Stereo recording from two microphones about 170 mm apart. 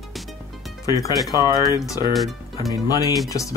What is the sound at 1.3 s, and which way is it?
Speech, 20° right (ahead or behind).